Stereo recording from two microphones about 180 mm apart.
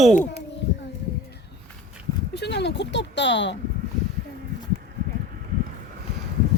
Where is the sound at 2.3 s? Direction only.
70° left (ahead or behind).